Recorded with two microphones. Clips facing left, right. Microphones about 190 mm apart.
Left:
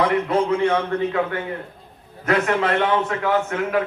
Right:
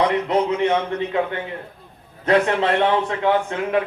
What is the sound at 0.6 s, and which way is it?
A man's voice, 20° right (ahead or behind).